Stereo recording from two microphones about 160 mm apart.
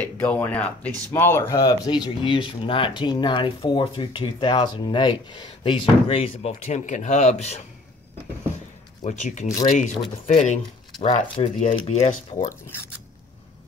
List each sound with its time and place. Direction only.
0.0 s speech: 10° left (ahead or behind); by 7.6 s 45° left (ahead or behind)
9.0 s speech: 50° left (ahead or behind)